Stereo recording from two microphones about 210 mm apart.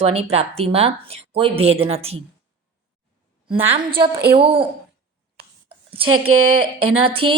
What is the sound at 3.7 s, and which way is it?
Speech, 25° right (ahead or behind).